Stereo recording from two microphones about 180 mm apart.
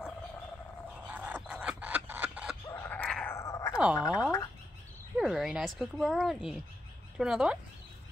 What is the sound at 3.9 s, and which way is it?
Speech, 20° left (ahead or behind).